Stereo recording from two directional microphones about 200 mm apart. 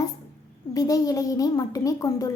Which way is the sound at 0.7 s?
20° left (ahead or behind).